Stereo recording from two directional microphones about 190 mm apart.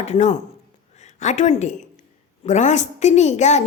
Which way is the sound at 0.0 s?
35° left (ahead or behind).